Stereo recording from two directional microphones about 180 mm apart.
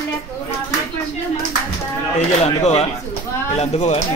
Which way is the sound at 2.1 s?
35° left (ahead or behind).